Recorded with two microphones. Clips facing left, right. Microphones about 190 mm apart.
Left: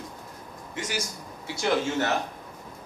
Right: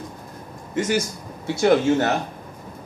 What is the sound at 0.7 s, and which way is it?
A man's voice, 55° right (ahead or behind).